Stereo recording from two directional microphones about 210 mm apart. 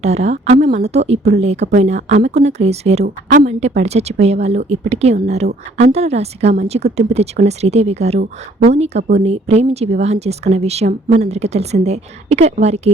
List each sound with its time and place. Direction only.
0.0 s a woman's voice: 30° right (ahead or behind)